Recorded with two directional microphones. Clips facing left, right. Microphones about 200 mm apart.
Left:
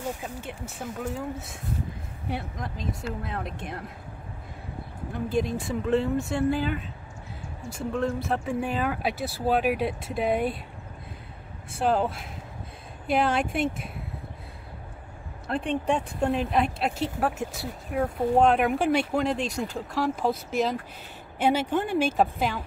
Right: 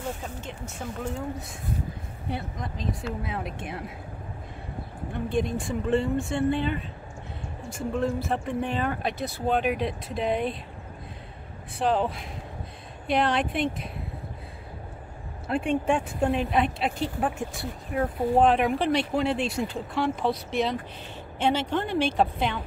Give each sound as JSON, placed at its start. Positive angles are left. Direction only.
{"t": 0.0, "sound": "a woman's voice", "side_deg": 10}
{"t": 5.1, "sound": "speech", "side_deg": 0}
{"t": 7.9, "sound": "speech", "side_deg": 0}
{"t": 11.8, "sound": "speech", "side_deg": 0}
{"t": 15.4, "sound": "speech", "side_deg": -5}
{"t": 19.3, "sound": "speech", "side_deg": 40}
{"t": 19.9, "sound": "a woman's voice", "side_deg": 0}